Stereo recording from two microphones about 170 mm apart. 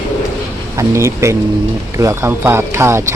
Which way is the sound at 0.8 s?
15° right (ahead or behind).